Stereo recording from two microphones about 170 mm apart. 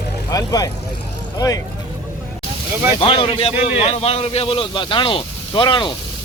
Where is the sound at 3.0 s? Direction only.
30° left (ahead or behind).